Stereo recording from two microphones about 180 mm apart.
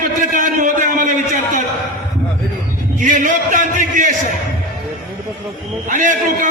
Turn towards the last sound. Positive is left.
turn(degrees=-45)  # may be behind; listen again after turning